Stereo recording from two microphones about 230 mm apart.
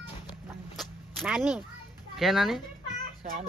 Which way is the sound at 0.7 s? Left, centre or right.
Centre.